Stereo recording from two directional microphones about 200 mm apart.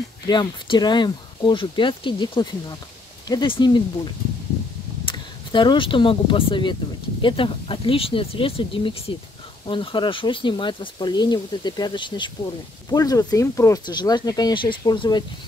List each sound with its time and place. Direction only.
0.3 s speech: 20° left (ahead or behind)
5.1 s speech: 25° left (ahead or behind)